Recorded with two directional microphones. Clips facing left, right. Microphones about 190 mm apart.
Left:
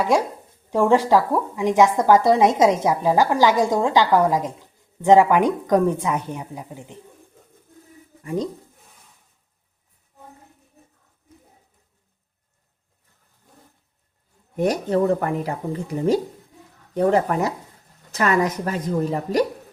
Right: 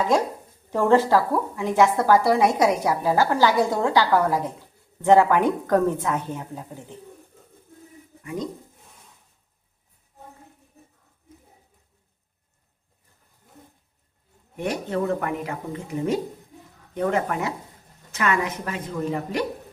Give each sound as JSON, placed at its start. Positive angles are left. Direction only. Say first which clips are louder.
{"t": 0.7, "sound": "a woman's voice", "louder": "left 2 dB", "side_deg": 15}
{"t": 8.2, "sound": "speech", "louder": "left 5 dB", "side_deg": 35}
{"t": 14.5, "sound": "speech", "louder": "left 6 dB", "side_deg": 40}